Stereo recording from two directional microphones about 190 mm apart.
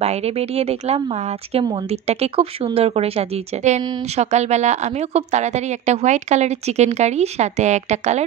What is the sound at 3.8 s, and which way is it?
Speech, 25° right (ahead or behind).